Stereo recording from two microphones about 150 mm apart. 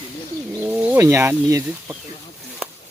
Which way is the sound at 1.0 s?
15° right (ahead or behind).